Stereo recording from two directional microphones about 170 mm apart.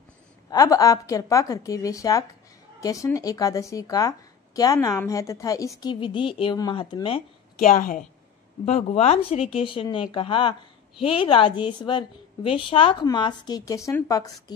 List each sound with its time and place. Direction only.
0.5 s a woman's voice: 20° left (ahead or behind)
7.6 s a woman's voice: 50° left (ahead or behind)
8.6 s a woman's voice: 40° left (ahead or behind); by 14.3 s 20° left (ahead or behind)